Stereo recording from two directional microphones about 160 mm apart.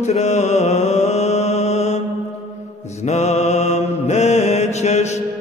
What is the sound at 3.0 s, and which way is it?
Mantra, 45° left (ahead or behind).